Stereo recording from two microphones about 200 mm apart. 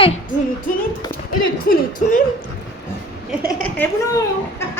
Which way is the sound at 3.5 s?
15° left (ahead or behind).